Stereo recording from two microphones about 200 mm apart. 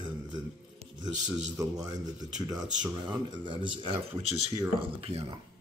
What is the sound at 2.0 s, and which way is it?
Speech, 20° right (ahead or behind).